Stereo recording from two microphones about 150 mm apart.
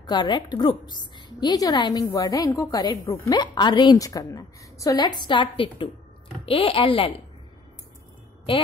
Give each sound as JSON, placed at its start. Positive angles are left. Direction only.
{"t": 0.0, "sound": "a woman's voice", "side_deg": 30}